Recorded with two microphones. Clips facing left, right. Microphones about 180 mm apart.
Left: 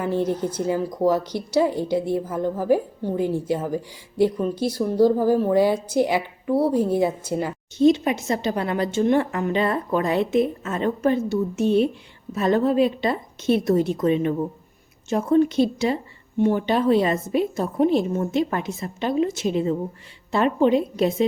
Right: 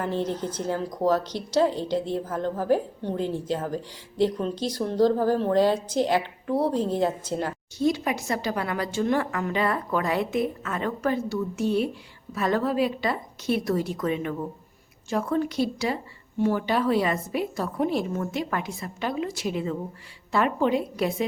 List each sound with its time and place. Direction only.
0.0 s speech: 10° left (ahead or behind)
7.8 s a woman's voice: 20° left (ahead or behind)